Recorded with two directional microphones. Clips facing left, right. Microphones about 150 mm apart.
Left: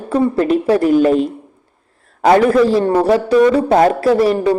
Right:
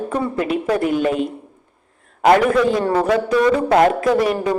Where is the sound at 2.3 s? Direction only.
35° left (ahead or behind).